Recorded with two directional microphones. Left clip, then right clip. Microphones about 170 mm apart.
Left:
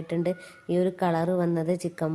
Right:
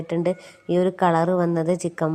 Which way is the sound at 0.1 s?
15° right (ahead or behind).